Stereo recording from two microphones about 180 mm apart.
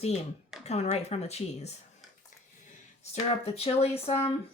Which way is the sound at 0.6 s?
35° left (ahead or behind).